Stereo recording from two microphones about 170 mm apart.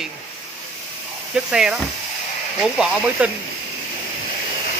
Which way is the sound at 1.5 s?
5° right (ahead or behind).